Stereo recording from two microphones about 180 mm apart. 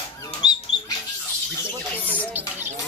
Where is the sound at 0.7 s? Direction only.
25° left (ahead or behind).